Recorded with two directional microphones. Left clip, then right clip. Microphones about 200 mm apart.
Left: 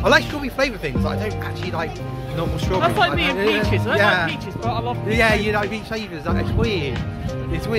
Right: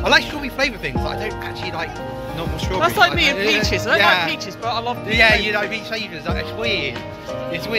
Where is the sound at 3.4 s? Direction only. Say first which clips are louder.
Right 2 dB; 15° right (ahead or behind).